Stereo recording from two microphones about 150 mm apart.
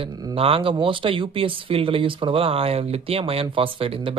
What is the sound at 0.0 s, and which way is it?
Speech, 25° right (ahead or behind).